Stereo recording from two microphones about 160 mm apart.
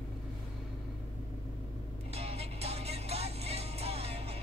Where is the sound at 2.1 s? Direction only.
40° right (ahead or behind).